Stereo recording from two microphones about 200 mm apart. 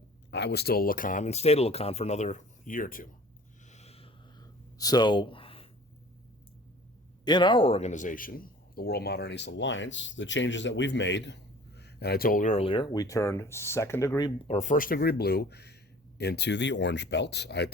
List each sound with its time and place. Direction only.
0.3 s speech: 60° left (ahead or behind); by 3.1 s 45° left (ahead or behind)
3.7 s a sound: 35° left (ahead or behind)
7.3 s a man's voice: 20° left (ahead or behind)
14.4 s speech: 35° left (ahead or behind); by 17.7 s 55° left (ahead or behind)